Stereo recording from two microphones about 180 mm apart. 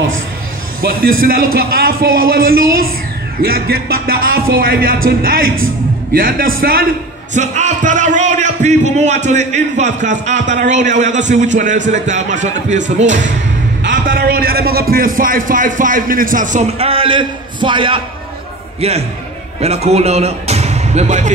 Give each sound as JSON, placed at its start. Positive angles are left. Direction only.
{"t": 1.2, "sound": "a man's voice", "side_deg": -55}
{"t": 7.3, "sound": "a man's voice", "side_deg": -40}
{"t": 14.0, "sound": "a man's voice", "side_deg": -55}
{"t": 16.7, "sound": "a man's voice", "side_deg": -30}